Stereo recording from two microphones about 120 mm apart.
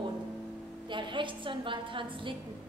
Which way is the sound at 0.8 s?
40° right (ahead or behind).